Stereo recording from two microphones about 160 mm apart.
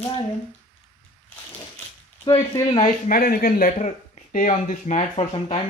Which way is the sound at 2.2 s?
25° left (ahead or behind).